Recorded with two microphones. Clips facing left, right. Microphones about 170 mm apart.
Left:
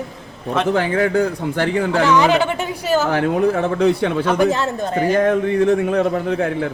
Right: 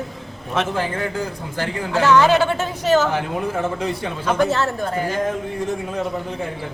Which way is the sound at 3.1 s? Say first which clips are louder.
Left 7 dB; 65° left (ahead or behind).